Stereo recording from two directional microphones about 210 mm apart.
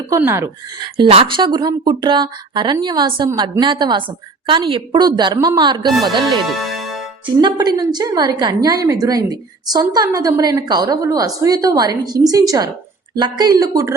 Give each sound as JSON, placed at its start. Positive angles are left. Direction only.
{"t": 0.1, "sound": "a woman's voice", "side_deg": -15}
{"t": 0.9, "sound": "speech", "side_deg": -30}
{"t": 6.5, "sound": "music", "side_deg": 0}
{"t": 7.3, "sound": "a woman's voice", "side_deg": -20}